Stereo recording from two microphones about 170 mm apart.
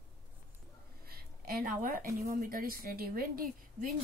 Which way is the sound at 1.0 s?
60° right (ahead or behind).